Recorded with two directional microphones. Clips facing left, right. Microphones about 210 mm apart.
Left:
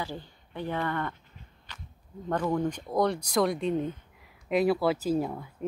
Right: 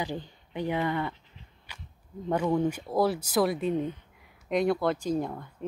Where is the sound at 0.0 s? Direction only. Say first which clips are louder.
Right 3 dB; 15° right (ahead or behind).